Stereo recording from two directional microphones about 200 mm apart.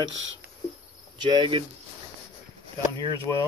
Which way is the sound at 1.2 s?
25° right (ahead or behind).